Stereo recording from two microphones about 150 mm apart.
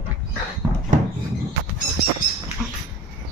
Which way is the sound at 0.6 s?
25° right (ahead or behind).